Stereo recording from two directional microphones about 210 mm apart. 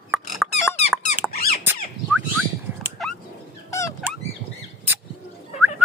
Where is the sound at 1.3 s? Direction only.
45° left (ahead or behind).